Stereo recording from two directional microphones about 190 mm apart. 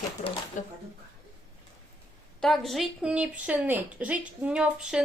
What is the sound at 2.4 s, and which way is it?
A woman's voice, centre (ahead or behind).